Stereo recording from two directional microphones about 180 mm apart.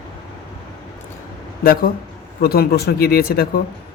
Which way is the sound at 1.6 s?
55° left (ahead or behind).